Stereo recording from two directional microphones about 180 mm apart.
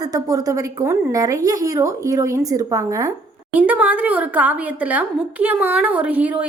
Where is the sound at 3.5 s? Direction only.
10° right (ahead or behind).